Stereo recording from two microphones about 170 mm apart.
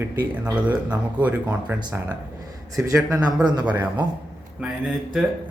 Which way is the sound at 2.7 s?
20° right (ahead or behind).